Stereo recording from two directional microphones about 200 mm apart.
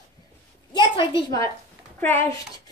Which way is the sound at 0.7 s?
25° left (ahead or behind).